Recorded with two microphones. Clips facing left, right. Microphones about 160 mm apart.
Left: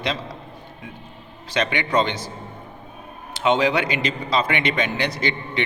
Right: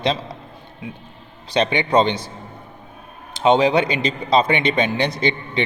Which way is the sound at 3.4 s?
25° right (ahead or behind).